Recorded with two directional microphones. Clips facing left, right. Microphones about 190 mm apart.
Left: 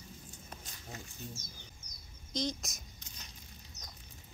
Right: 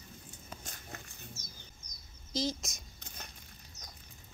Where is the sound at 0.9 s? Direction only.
55° right (ahead or behind).